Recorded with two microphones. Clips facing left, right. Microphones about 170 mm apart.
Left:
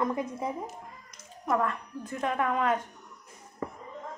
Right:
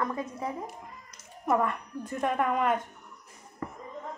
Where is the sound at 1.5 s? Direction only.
5° right (ahead or behind).